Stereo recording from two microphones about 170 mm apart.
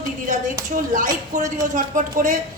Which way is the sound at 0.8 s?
50° right (ahead or behind).